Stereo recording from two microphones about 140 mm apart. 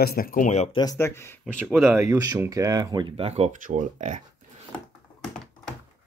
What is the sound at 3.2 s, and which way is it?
Speech, 50° right (ahead or behind).